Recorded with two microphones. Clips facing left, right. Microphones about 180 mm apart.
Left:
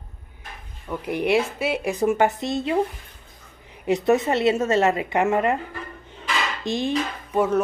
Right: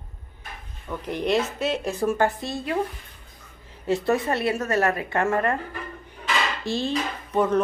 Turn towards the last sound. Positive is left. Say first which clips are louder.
# left 1 dB
turn(degrees=10)  # may be behind; listen again after turning